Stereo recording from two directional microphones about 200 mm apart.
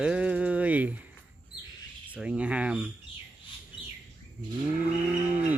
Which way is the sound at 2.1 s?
5° right (ahead or behind).